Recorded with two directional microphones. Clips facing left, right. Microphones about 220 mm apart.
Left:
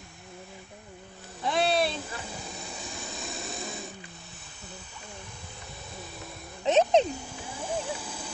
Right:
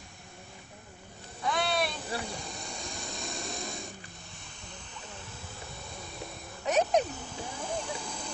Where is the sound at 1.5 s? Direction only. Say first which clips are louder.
Left 5 dB; 30° left (ahead or behind).